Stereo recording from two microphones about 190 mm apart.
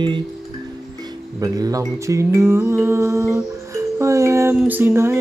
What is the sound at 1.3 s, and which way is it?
Music, 20° right (ahead or behind).